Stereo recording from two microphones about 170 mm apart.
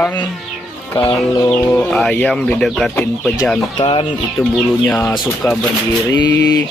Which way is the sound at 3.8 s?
30° left (ahead or behind).